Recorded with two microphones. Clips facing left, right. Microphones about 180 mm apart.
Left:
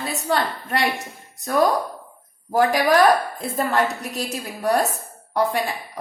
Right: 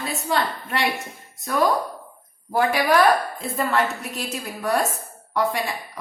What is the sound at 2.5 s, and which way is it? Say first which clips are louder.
A woman's voice: left 2 dB; 40° left (ahead or behind).